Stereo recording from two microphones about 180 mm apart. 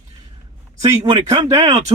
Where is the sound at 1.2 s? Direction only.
20° right (ahead or behind).